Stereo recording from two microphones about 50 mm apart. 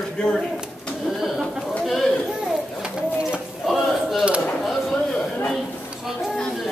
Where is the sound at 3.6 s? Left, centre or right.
Centre.